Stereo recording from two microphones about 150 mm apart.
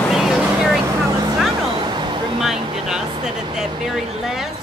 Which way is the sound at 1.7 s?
30° right (ahead or behind).